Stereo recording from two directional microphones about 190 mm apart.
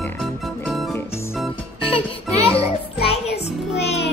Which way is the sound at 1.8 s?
30° left (ahead or behind).